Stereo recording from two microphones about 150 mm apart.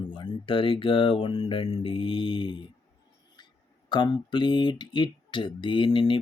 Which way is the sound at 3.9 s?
30° left (ahead or behind).